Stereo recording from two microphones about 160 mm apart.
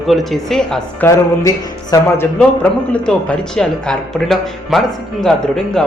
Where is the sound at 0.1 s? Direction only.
Centre (ahead or behind).